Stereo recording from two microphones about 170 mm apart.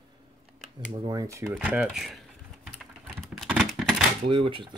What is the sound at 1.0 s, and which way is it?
Speech, 20° right (ahead or behind).